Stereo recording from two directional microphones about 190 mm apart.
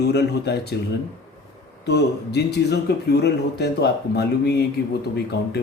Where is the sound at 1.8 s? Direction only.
60° left (ahead or behind).